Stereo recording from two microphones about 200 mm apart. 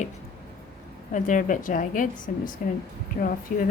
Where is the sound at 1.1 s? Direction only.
40° left (ahead or behind).